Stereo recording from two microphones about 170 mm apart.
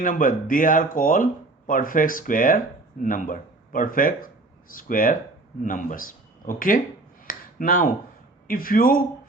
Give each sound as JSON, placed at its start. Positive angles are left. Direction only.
{"t": 0.0, "sound": "speech", "side_deg": 50}
{"t": 7.3, "sound": "finger snapping", "side_deg": 55}
{"t": 8.4, "sound": "speech", "side_deg": 55}